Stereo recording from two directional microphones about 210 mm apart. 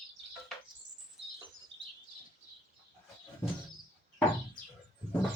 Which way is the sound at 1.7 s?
60° right (ahead or behind).